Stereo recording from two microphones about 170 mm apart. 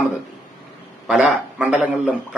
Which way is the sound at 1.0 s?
5° right (ahead or behind).